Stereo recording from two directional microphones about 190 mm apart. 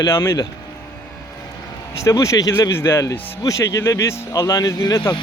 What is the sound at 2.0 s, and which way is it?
A man's voice, 15° left (ahead or behind).